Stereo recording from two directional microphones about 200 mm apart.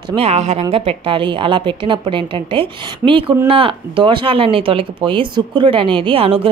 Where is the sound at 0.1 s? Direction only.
30° right (ahead or behind).